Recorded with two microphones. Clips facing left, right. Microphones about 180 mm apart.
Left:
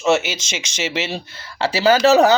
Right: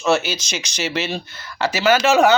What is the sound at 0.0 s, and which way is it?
Speech, 25° left (ahead or behind).